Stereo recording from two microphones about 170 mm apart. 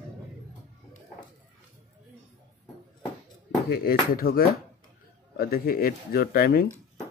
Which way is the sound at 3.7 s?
60° left (ahead or behind).